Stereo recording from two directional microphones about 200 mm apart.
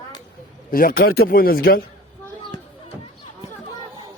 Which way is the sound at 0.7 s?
45° left (ahead or behind).